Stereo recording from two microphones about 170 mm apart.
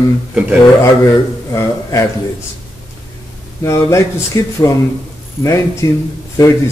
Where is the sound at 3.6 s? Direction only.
15° left (ahead or behind).